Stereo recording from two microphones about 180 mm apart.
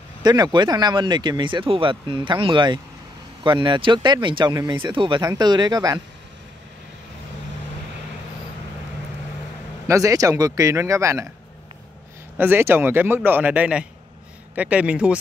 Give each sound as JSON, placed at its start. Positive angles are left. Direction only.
{"t": 0.2, "sound": "speech", "side_deg": -25}
{"t": 9.8, "sound": "a man's voice", "side_deg": -20}
{"t": 12.4, "sound": "a man's voice", "side_deg": -10}